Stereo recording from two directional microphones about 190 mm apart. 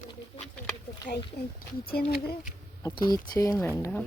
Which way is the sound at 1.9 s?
55° left (ahead or behind).